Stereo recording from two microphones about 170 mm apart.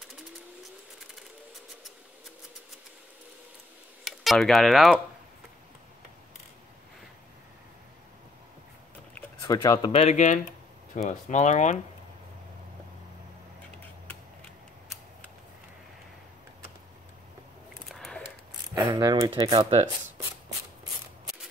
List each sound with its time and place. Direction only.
4.0 s speech: centre (ahead or behind)
9.4 s speech: 20° left (ahead or behind)
10.0 s speech: 45° left (ahead or behind)
17.9 s a sound: centre (ahead or behind)
18.9 s speech: 25° right (ahead or behind)
19.5 s speech: 40° right (ahead or behind)